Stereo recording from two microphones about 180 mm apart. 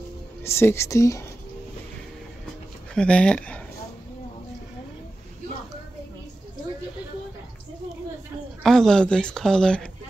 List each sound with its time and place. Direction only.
0.5 s speech: 15° left (ahead or behind)
2.9 s speech: 5° left (ahead or behind)
8.6 s speech: 5° left (ahead or behind)